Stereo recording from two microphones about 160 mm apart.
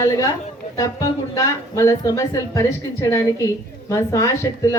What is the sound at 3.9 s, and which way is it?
Speech, 20° left (ahead or behind).